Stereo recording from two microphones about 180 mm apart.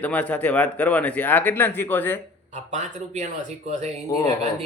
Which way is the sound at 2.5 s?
40° right (ahead or behind).